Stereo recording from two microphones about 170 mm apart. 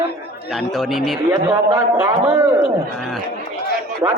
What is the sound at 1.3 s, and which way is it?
A man's voice, 15° right (ahead or behind).